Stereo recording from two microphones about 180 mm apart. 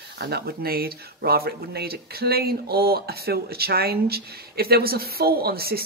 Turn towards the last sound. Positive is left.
turn(degrees=-60)  # may be behind; listen again after turning